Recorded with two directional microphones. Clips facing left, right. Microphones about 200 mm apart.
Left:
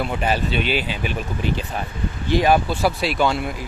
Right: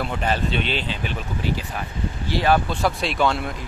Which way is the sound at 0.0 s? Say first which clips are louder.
Left 2 dB; 10° left (ahead or behind).